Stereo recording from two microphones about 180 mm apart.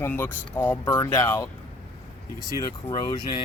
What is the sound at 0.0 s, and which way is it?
Speech, 10° left (ahead or behind).